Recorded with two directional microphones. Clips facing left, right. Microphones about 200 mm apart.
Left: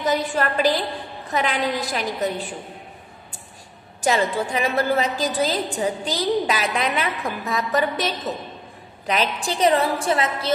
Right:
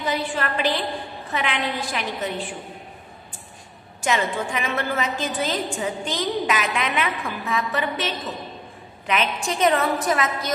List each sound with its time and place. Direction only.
0.0 s a woman's voice: 40° left (ahead or behind)
4.0 s a woman's voice: 35° left (ahead or behind)